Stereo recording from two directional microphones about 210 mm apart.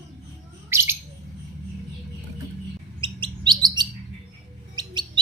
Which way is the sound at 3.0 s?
20° right (ahead or behind).